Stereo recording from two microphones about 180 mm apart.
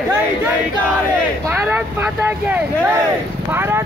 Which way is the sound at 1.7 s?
10° right (ahead or behind).